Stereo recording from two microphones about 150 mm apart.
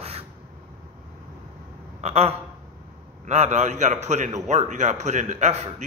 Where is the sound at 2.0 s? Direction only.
45° right (ahead or behind).